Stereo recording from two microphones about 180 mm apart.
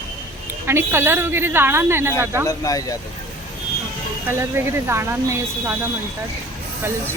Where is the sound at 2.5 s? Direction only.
20° left (ahead or behind).